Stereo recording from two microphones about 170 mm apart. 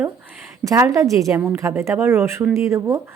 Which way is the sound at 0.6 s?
20° right (ahead or behind).